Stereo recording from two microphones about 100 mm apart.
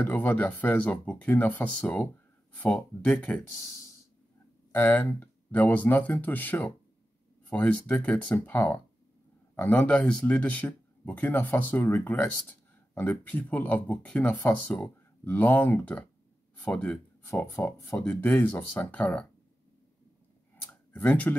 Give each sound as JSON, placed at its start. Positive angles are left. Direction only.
{"t": 0.0, "sound": "speech", "side_deg": 20}
{"t": 4.7, "sound": "speech", "side_deg": 20}
{"t": 17.3, "sound": "speech", "side_deg": 30}
{"t": 20.6, "sound": "a sound", "side_deg": 20}